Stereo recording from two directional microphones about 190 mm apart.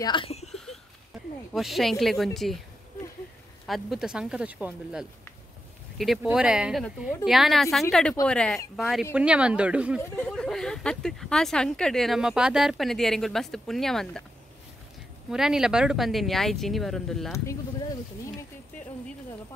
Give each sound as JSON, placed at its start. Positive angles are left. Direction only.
{"t": 0.0, "sound": "speech", "side_deg": 25}
{"t": 1.5, "sound": "a woman's voice", "side_deg": 0}
{"t": 3.6, "sound": "a woman's voice", "side_deg": 0}
{"t": 6.2, "sound": "a woman's voice", "side_deg": -5}
{"t": 10.1, "sound": "a woman's voice", "side_deg": 5}
{"t": 15.3, "sound": "a woman's voice", "side_deg": -5}